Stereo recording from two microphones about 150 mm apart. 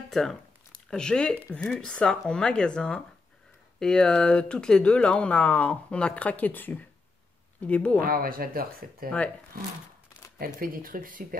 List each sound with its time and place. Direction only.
0.1 s speech: centre (ahead or behind)
8.0 s speech: 75° right (ahead or behind)
10.4 s speech: 75° right (ahead or behind)